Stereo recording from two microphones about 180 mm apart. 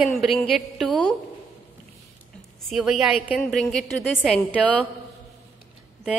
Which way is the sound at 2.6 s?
Centre (ahead or behind).